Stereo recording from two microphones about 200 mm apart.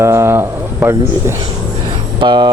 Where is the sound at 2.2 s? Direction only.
25° right (ahead or behind).